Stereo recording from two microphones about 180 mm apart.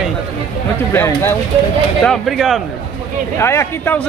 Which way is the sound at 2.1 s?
Centre (ahead or behind).